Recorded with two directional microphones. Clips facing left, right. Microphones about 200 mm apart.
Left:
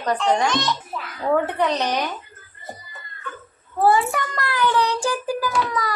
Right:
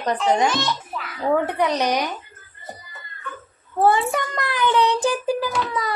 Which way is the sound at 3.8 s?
20° right (ahead or behind).